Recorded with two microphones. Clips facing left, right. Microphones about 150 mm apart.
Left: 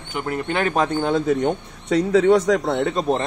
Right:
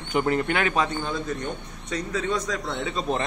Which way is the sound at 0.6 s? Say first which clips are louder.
Left 5 dB; 50° left (ahead or behind).